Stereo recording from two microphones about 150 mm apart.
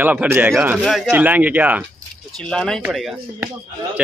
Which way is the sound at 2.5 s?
5° left (ahead or behind).